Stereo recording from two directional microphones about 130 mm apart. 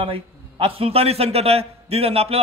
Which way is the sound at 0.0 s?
45° right (ahead or behind).